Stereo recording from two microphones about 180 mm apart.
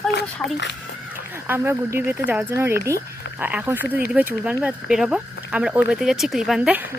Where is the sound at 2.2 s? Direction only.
10° right (ahead or behind).